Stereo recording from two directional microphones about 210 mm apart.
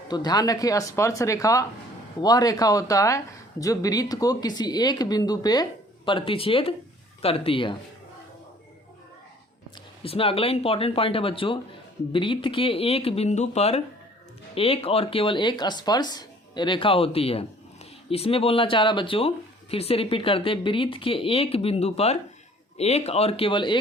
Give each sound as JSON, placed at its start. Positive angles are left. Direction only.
{"t": 0.1, "sound": "speech", "side_deg": 20}
{"t": 10.0, "sound": "speech", "side_deg": 25}